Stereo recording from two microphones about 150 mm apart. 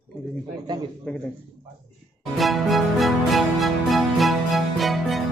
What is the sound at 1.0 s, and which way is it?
Speech, 5° left (ahead or behind).